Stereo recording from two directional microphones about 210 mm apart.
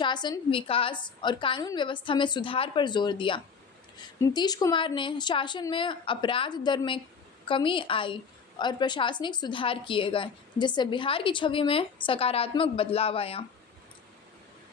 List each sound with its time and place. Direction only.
0.0 s a woman's voice: 20° left (ahead or behind)